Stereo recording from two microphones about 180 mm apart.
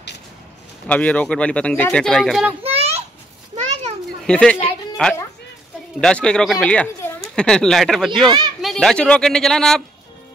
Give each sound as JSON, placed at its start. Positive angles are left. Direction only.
{"t": 0.8, "sound": "speech", "side_deg": 10}
{"t": 2.6, "sound": "a sound", "side_deg": -35}
{"t": 4.3, "sound": "speech", "side_deg": 5}